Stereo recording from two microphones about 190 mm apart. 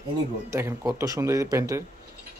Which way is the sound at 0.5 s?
15° right (ahead or behind).